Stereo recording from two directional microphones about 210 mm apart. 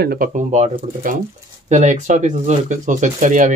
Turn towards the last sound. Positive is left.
turn(degrees=-35)  # may be behind; listen again after turning